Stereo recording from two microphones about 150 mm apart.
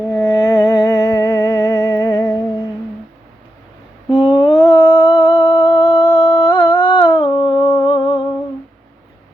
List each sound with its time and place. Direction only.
0.1 s music: 25° left (ahead or behind)
4.1 s humming: 30° left (ahead or behind)